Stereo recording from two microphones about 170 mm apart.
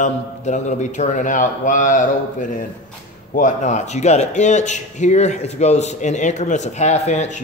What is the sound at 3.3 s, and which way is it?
Speech, 45° left (ahead or behind).